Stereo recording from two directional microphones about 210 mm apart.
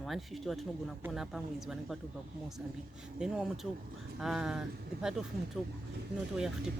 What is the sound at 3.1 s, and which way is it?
Speech, 5° right (ahead or behind).